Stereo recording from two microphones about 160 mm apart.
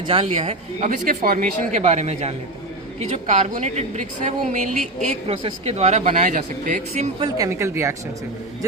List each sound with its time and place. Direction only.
0.1 s a woman's voice: 40° right (ahead or behind)
0.9 s a woman's voice: 65° right (ahead or behind)
7.2 s a woman's voice: 20° right (ahead or behind)